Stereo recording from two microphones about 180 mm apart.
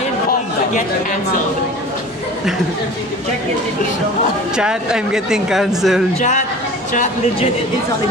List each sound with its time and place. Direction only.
4.6 s a woman's voice: 5° right (ahead or behind)
6.1 s a man's voice: 40° left (ahead or behind)